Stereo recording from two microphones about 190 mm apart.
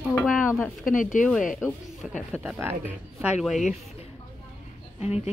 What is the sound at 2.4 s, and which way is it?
Speech, 10° right (ahead or behind).